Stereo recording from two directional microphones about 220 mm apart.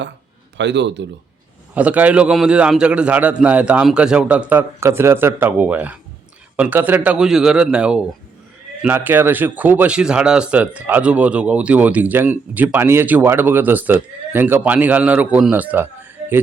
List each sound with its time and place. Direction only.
0.5 s a man's voice: 50° right (ahead or behind)
1.7 s a man's voice: 5° right (ahead or behind)